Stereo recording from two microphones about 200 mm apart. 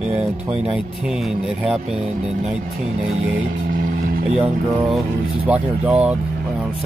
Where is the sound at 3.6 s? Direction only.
45° right (ahead or behind).